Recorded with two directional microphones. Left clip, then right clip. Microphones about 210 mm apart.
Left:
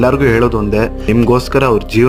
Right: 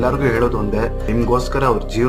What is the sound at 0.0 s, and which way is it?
Speech, 40° left (ahead or behind).